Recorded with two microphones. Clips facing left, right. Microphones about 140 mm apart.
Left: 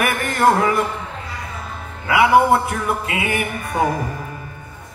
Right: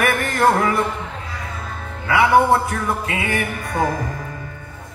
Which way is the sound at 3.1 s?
20° left (ahead or behind).